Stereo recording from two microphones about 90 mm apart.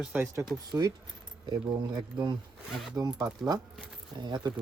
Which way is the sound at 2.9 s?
40° right (ahead or behind).